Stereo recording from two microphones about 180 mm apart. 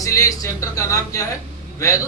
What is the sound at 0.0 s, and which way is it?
A man's voice, 20° left (ahead or behind).